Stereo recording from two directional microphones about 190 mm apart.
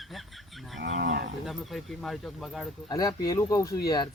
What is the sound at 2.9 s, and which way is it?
Speech, 20° left (ahead or behind).